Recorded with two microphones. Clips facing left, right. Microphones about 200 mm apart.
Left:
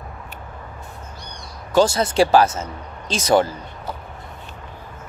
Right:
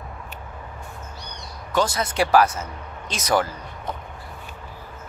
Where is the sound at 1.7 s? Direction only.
30° left (ahead or behind).